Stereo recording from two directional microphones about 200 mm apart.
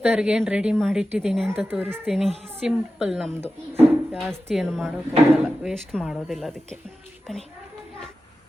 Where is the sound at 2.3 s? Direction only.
30° right (ahead or behind).